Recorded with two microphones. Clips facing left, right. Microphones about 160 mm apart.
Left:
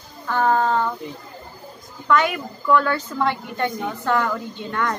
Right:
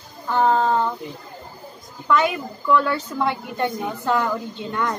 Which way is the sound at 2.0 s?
20° right (ahead or behind).